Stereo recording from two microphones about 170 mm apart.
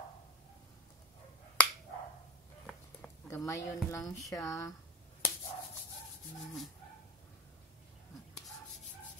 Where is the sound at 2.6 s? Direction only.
5° left (ahead or behind).